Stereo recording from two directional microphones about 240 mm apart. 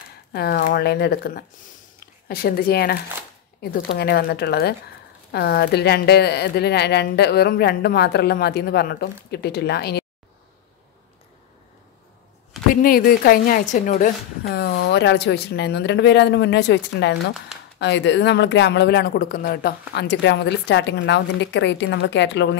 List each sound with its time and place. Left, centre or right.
0.3 s speech: left
4.0 s a woman's voice: left
12.8 s a woman's voice: left